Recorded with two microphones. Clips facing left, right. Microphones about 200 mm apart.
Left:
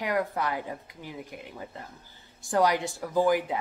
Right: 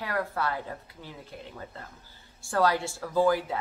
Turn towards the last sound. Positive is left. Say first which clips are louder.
# even
turn(degrees=15)  # may be behind; listen again after turning